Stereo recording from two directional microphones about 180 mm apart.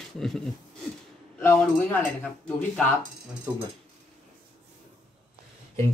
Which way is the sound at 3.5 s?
15° right (ahead or behind).